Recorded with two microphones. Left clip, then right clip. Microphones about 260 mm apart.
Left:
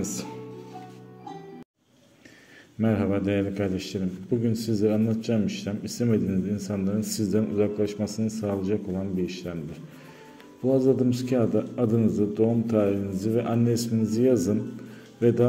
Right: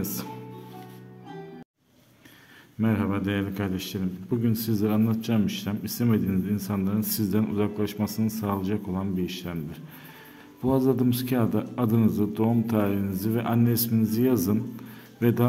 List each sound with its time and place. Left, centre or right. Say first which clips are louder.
0.0 s a man's voice: left 1 dB; centre
2.8 s a man's voice: left 2 dB; centre
10.7 s a man's voice: left 2 dB; centre